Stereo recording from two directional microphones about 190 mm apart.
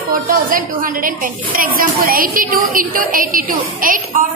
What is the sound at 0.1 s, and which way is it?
A woman's voice, 50° right (ahead or behind).